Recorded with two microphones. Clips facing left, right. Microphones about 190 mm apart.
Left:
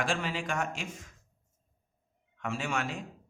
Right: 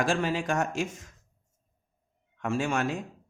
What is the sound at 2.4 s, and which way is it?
Speech, 45° right (ahead or behind).